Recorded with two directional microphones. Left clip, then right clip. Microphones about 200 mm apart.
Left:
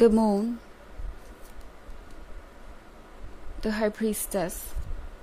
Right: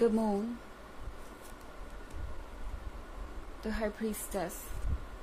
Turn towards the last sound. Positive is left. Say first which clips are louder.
# left 8 dB
turn(degrees=45)  # may be behind; listen again after turning